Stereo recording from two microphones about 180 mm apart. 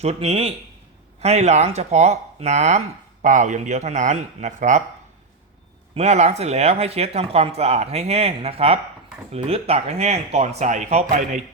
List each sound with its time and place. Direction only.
0.0 s speech: 35° right (ahead or behind)
5.9 s speech: 40° right (ahead or behind)